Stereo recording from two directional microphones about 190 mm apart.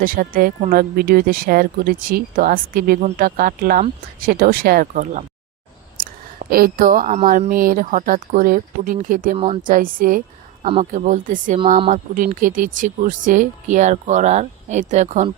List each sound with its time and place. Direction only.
0.0 s speech: 50° right (ahead or behind)
6.0 s a sound: 50° right (ahead or behind)
7.3 s speech: 45° right (ahead or behind)